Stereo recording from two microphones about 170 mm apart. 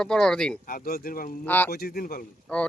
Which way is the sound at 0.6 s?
60° left (ahead or behind).